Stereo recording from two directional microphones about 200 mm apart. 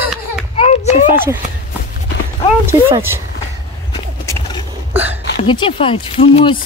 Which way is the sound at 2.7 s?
10° right (ahead or behind).